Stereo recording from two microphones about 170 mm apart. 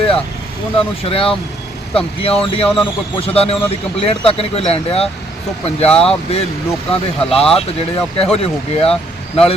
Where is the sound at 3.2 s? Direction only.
35° left (ahead or behind).